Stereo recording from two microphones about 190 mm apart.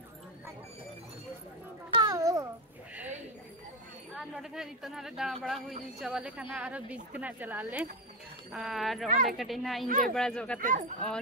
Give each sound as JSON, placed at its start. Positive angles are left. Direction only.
{"t": 2.0, "sound": "a sound", "side_deg": -20}
{"t": 4.2, "sound": "speech", "side_deg": 0}
{"t": 9.1, "sound": "speech", "side_deg": -45}
{"t": 9.4, "sound": "speech", "side_deg": 0}
{"t": 9.8, "sound": "speech", "side_deg": -45}
{"t": 10.1, "sound": "speech", "side_deg": 5}
{"t": 10.6, "sound": "speech", "side_deg": -45}